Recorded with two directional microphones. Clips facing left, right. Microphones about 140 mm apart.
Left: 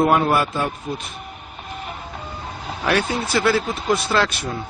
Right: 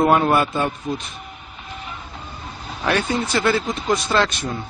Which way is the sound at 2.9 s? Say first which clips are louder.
Even; 10° left (ahead or behind).